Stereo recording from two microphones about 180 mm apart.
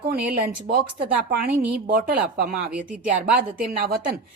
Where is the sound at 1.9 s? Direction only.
60° right (ahead or behind).